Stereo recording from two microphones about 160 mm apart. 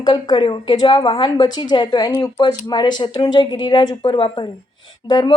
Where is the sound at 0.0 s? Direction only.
30° left (ahead or behind).